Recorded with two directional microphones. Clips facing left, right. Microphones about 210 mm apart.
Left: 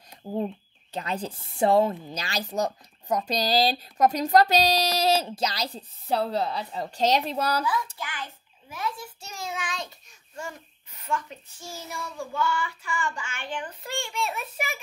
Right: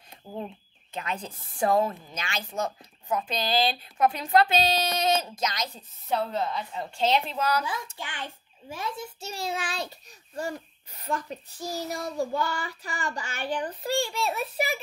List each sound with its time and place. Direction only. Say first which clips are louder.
0.2 s speech: left 7 dB; 25° left (ahead or behind)
0.9 s speech: left 3 dB; 35° left (ahead or behind)
8.0 s a child's voice: left 1 dB; 25° right (ahead or behind)